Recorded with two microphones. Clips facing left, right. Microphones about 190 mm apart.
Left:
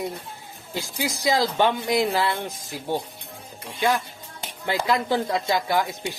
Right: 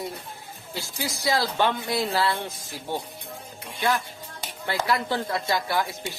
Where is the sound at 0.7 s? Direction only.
15° left (ahead or behind).